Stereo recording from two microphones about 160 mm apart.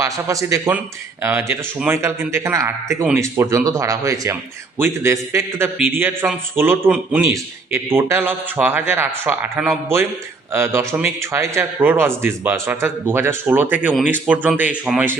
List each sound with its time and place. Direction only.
0.0 s a man's voice: 20° right (ahead or behind)